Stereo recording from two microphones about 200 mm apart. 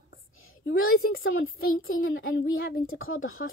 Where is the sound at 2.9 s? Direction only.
85° left.